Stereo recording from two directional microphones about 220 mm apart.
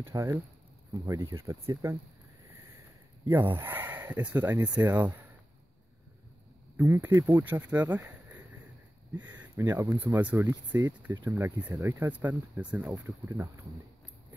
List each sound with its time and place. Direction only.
0.0 s speech: 10° right (ahead or behind)
3.3 s speech: 10° right (ahead or behind)
6.8 s speech: 10° right (ahead or behind)
9.1 s speech: 20° right (ahead or behind)